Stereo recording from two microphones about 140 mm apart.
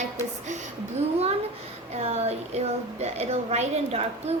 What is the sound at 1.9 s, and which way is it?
A woman's voice, 50° right (ahead or behind).